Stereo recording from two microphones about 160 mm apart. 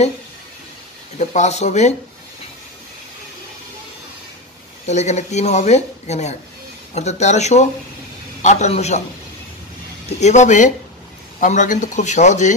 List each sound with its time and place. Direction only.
1.1 s speech: 45° left (ahead or behind)
4.8 s speech: 45° left (ahead or behind)
10.0 s speech: 45° left (ahead or behind)